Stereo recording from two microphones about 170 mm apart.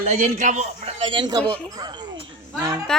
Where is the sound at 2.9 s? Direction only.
5° left (ahead or behind).